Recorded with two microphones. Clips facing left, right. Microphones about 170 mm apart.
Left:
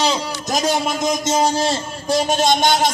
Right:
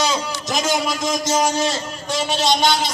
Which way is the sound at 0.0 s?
40° left (ahead or behind).